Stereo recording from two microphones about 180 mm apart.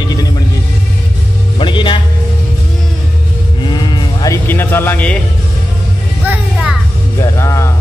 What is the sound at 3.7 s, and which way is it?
Livestock, 25° left (ahead or behind).